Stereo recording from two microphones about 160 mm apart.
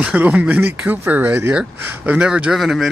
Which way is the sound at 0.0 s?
10° right (ahead or behind).